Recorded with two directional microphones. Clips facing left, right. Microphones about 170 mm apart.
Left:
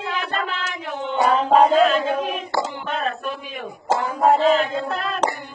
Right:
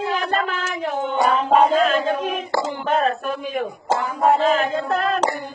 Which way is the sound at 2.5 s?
45° right (ahead or behind).